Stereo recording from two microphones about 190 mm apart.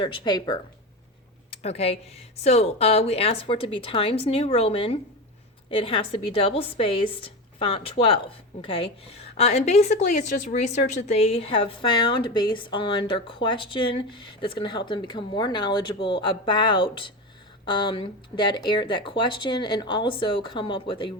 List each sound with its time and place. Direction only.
0.0 s a woman's voice: 25° left (ahead or behind)
9.4 s a woman's voice: 35° left (ahead or behind)